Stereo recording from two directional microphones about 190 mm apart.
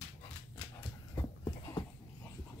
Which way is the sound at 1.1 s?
20° left (ahead or behind).